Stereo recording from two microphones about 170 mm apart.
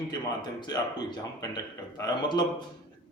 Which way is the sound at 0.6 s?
25° left (ahead or behind).